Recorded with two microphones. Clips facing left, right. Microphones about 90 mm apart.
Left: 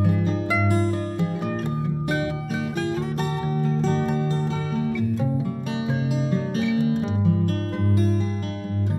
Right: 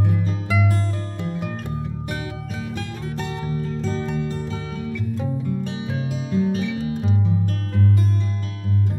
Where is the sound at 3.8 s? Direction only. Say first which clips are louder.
Left 4 dB; 45° left (ahead or behind).